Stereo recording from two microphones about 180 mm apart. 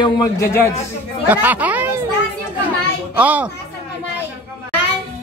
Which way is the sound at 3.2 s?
10° right (ahead or behind).